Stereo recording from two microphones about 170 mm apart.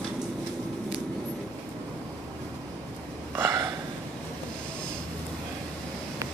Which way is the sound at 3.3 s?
15° right (ahead or behind).